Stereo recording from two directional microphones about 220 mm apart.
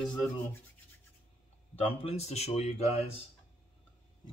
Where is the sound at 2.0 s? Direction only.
30° left (ahead or behind).